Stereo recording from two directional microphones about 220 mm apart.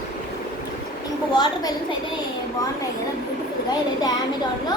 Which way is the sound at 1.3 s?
20° left (ahead or behind).